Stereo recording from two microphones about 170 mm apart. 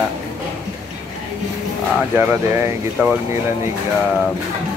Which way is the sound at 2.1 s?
15° right (ahead or behind).